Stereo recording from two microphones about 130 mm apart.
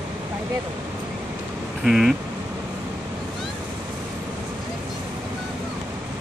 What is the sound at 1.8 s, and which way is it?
Speech, centre (ahead or behind).